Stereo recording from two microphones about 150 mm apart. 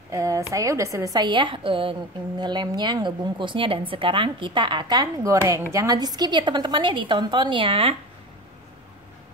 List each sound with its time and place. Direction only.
0.1 s a woman's voice: 20° right (ahead or behind); by 7.9 s 35° right (ahead or behind)